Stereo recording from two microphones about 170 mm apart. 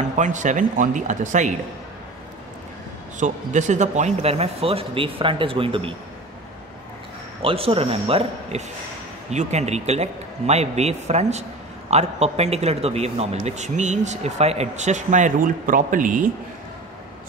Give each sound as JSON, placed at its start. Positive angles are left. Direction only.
{"t": 0.2, "sound": "a man's voice", "side_deg": -45}
{"t": 3.2, "sound": "speech", "side_deg": -45}
{"t": 7.4, "sound": "a man's voice", "side_deg": -35}